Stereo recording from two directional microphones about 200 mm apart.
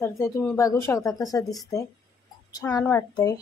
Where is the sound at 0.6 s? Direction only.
15° left (ahead or behind).